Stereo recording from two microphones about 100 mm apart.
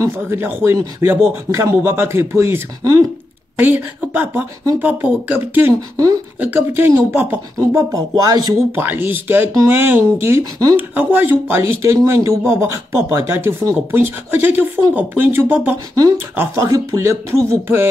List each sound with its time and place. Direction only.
0.0 s speech: 30° right (ahead or behind)
3.5 s a woman's voice: 15° right (ahead or behind)
5.8 s speech: 35° right (ahead or behind)
6.4 s speech: 20° right (ahead or behind)
7.5 s speech: 35° right (ahead or behind)
8.7 s speech: 20° right (ahead or behind)
10.4 s speech: 35° right (ahead or behind)
10.8 s speech: 20° right (ahead or behind)
15.9 s speech: 35° right (ahead or behind)